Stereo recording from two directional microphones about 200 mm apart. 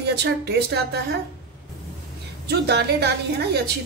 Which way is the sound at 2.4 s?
55° right (ahead or behind).